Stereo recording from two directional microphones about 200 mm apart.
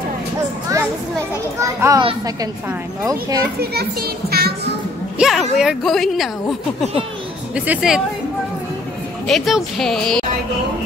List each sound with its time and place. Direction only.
1.6 s a child's voice: 15° right (ahead or behind)
4.3 s music: 50° right (ahead or behind)
5.2 s a woman's voice: centre (ahead or behind)
7.5 s a woman's voice: 5° right (ahead or behind)
9.3 s a woman's voice: centre (ahead or behind)